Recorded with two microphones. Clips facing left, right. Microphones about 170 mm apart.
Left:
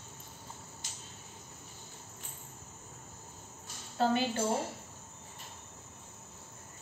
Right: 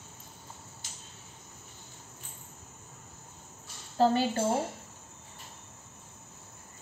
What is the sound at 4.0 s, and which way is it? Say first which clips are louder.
Speech: right 5 dB; 35° right (ahead or behind).